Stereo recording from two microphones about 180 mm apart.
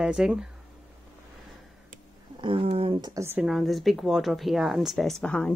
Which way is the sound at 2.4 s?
30° right (ahead or behind).